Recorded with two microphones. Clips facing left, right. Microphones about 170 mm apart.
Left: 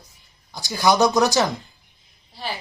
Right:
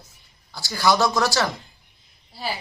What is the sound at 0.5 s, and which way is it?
Speech, 20° left (ahead or behind).